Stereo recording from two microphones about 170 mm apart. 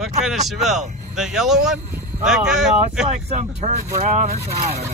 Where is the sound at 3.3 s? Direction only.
40° right (ahead or behind).